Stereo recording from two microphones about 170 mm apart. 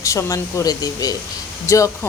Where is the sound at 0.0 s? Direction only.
20° left (ahead or behind).